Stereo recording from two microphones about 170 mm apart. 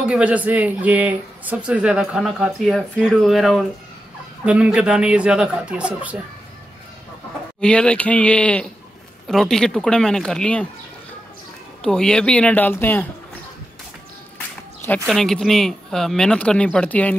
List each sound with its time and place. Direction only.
0.0 s a man's voice: 5° right (ahead or behind)
7.6 s a man's voice: 5° left (ahead or behind)
11.8 s speech: 5° left (ahead or behind)
15.0 s a man's voice: centre (ahead or behind)